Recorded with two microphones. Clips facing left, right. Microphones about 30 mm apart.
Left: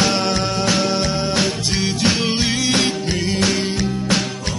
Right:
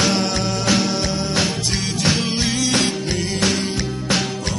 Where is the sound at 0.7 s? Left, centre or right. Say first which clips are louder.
Right 1 dB; centre.